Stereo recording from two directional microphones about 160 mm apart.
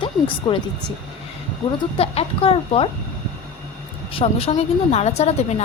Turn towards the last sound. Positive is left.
turn(degrees=40)  # may be behind; listen again after turning